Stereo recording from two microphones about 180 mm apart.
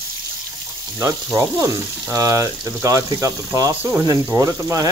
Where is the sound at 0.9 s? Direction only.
15° right (ahead or behind).